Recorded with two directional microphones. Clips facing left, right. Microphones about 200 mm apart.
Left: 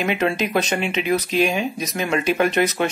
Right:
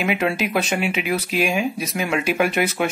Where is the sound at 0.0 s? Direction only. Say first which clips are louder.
Even; 5° right (ahead or behind).